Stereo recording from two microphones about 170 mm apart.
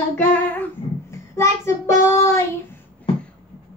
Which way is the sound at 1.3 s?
15° left (ahead or behind).